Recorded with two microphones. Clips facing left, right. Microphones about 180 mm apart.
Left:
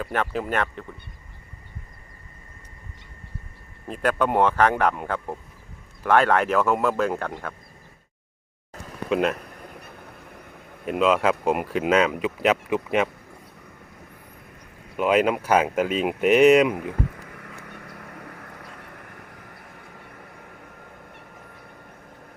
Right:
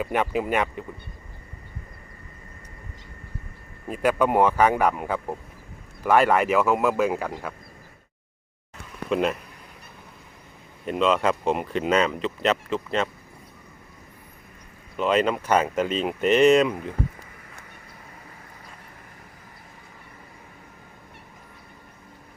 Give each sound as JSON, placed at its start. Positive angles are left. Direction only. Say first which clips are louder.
{"t": 0.0, "sound": "speech", "louder": "right 2 dB", "side_deg": -10}
{"t": 3.8, "sound": "speech", "louder": "right 1 dB", "side_deg": -5}
{"t": 9.0, "sound": "speech", "louder": "left 1 dB", "side_deg": 0}
{"t": 10.8, "sound": "speech", "louder": "left 1 dB", "side_deg": 5}
{"t": 14.9, "sound": "speech", "louder": "left 2 dB", "side_deg": 10}
{"t": 17.1, "sound": "vehicle", "louder": "left 5 dB", "side_deg": 65}